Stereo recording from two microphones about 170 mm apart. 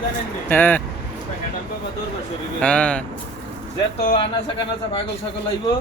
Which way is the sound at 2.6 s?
5° left (ahead or behind).